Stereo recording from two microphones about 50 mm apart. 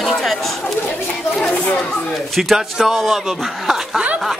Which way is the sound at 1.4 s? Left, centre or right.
Left.